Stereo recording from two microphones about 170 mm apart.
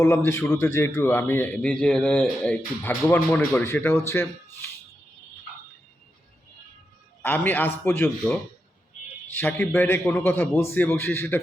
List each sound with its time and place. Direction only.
0.0 s a man's voice: 15° left (ahead or behind)
7.2 s a man's voice: 10° left (ahead or behind)